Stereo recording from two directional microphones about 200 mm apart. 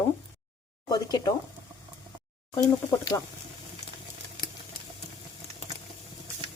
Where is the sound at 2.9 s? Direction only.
15° left (ahead or behind).